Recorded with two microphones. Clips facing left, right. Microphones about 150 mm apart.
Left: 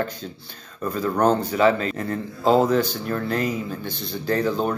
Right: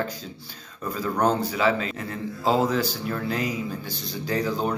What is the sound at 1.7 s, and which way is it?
Speech, 45° left (ahead or behind).